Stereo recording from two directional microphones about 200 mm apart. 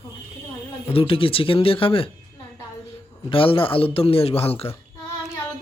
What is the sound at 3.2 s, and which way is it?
Speech, 25° left (ahead or behind).